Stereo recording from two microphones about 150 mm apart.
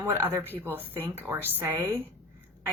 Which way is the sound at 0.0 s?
15° right (ahead or behind).